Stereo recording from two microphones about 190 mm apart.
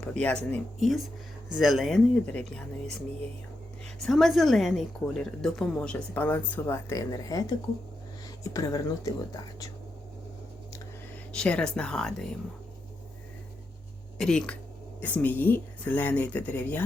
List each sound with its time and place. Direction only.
0.0 s a woman's voice: 5° left (ahead or behind)
4.0 s a woman's voice: centre (ahead or behind); by 7.4 s 20° left (ahead or behind)
8.5 s speech: 20° left (ahead or behind)
11.3 s a woman's voice: 5° left (ahead or behind)
14.2 s a woman's voice: 5° left (ahead or behind)